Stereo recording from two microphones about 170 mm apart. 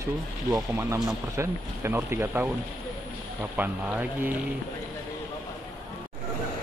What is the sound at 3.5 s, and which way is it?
Speech, 10° right (ahead or behind).